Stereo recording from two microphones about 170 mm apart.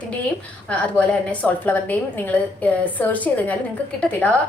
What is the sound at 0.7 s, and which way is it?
A woman's voice, 10° left (ahead or behind).